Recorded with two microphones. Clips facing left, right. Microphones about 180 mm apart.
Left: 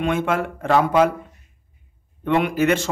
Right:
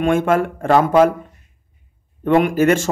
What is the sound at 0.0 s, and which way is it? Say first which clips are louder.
Speech: right 5 dB; 50° right (ahead or behind).